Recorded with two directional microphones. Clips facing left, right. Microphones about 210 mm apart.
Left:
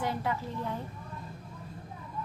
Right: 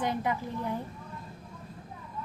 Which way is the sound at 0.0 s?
20° right (ahead or behind).